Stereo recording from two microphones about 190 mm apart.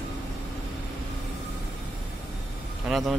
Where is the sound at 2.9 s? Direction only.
Centre (ahead or behind).